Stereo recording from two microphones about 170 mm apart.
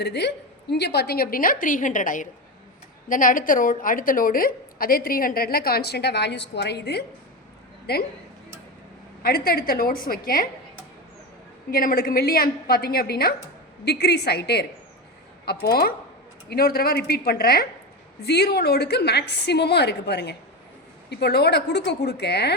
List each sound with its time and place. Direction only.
0.0 s a woman's voice: 80° left
9.2 s a woman's voice: 65° left (ahead or behind)
11.7 s a woman's voice: 55° left (ahead or behind); by 22.5 s 75° left (ahead or behind)